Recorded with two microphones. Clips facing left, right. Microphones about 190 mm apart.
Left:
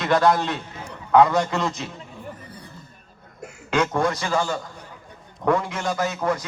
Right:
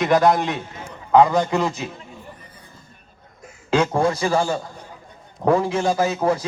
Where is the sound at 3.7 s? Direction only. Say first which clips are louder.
Right 3 dB; 30° right (ahead or behind).